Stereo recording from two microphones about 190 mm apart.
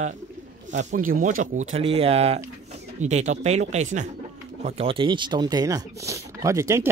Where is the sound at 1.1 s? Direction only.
45° right (ahead or behind).